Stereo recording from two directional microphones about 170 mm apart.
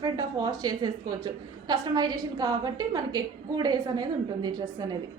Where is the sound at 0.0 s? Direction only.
25° right (ahead or behind).